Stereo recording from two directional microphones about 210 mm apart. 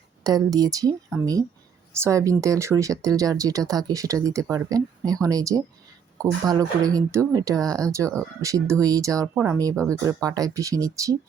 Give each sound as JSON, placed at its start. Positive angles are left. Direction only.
{"t": 0.3, "sound": "speech", "side_deg": -15}